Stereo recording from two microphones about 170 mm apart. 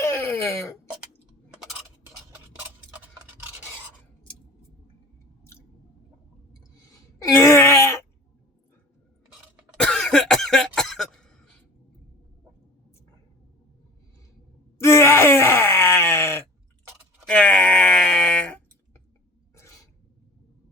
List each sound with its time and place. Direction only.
0.0 s wail: 15° left (ahead or behind)
7.4 s wail: 15° left (ahead or behind)
9.7 s cough: 5° left (ahead or behind)
14.8 s groan: 15° left (ahead or behind)
17.2 s wail: 5° left (ahead or behind)
19.5 s a sound: 20° left (ahead or behind)